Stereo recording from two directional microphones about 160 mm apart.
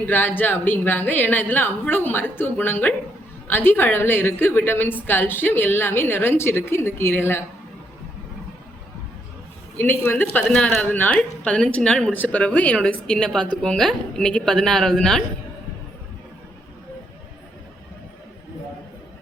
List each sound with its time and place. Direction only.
0.0 s a woman's voice: 10° left (ahead or behind)
9.7 s a woman's voice: 15° left (ahead or behind)